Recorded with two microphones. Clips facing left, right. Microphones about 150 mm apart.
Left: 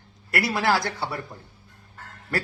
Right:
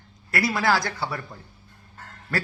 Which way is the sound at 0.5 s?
20° left (ahead or behind).